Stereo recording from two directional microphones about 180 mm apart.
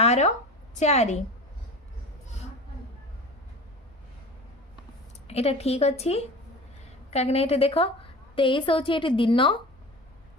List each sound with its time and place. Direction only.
0.0 s a sound: 40° left (ahead or behind)
0.8 s a woman's voice: 40° left (ahead or behind)
5.3 s a woman's voice: 35° left (ahead or behind)